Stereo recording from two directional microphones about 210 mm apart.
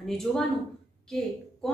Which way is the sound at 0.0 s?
Centre (ahead or behind).